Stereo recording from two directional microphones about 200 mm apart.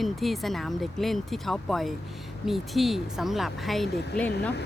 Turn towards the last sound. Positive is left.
turn(degrees=5)  # may be behind; listen again after turning